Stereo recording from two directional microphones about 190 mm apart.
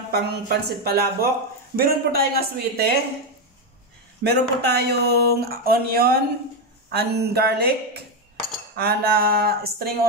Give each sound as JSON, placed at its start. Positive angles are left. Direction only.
{"t": 0.1, "sound": "speech", "side_deg": -55}
{"t": 4.2, "sound": "speech", "side_deg": -60}